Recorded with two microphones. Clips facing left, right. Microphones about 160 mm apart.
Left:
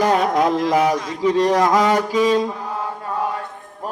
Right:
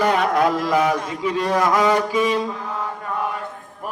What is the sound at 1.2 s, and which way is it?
Speech, 35° left (ahead or behind).